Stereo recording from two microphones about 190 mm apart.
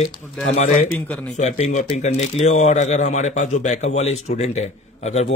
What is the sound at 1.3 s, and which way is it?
A man's voice, 35° left (ahead or behind).